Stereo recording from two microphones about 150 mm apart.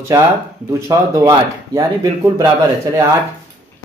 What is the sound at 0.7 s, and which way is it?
Speech, 20° right (ahead or behind).